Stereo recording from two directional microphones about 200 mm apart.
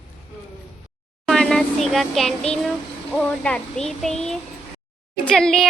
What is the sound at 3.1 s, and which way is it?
Speech, 5° left (ahead or behind).